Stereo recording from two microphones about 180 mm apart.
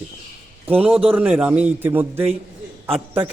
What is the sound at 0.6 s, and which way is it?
A man's voice, 10° right (ahead or behind).